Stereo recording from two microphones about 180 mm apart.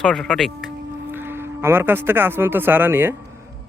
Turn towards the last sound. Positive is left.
turn(degrees=-10)  # may be behind; listen again after turning